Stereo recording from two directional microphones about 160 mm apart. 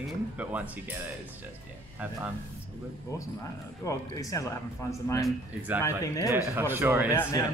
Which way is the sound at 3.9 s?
20° left (ahead or behind).